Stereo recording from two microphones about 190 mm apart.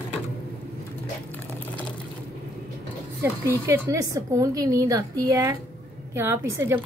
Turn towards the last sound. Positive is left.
turn(degrees=-15)  # may be behind; listen again after turning